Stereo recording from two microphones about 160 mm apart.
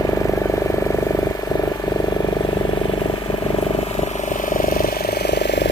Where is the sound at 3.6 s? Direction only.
40° left (ahead or behind).